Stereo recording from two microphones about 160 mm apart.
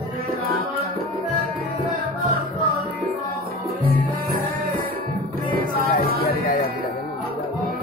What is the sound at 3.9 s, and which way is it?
Music, 70° right (ahead or behind).